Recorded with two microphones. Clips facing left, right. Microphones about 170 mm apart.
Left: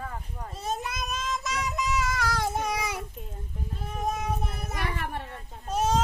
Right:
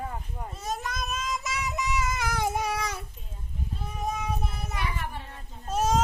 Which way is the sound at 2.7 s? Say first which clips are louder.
Left 1 dB; 10° left (ahead or behind).